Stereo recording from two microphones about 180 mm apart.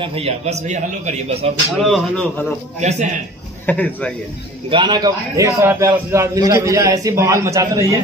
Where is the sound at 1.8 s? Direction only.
5° left (ahead or behind).